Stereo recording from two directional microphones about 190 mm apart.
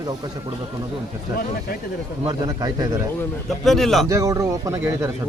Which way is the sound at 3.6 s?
Centre (ahead or behind).